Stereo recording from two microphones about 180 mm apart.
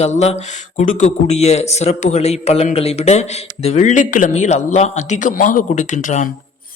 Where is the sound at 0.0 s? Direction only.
35° left (ahead or behind).